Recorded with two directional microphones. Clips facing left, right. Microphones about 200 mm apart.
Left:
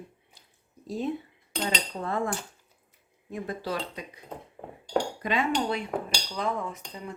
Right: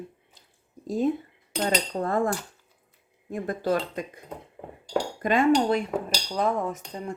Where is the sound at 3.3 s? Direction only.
50° right (ahead or behind).